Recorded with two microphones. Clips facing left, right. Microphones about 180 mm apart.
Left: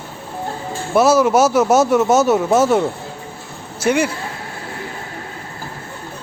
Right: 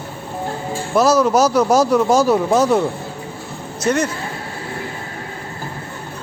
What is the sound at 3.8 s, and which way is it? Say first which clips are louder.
Speech: left 1 dB; 10° left (ahead or behind).